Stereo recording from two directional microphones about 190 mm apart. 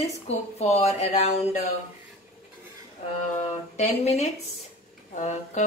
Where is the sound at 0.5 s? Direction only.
35° left (ahead or behind).